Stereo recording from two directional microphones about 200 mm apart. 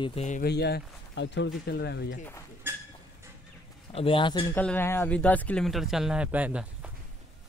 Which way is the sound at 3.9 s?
25° left (ahead or behind).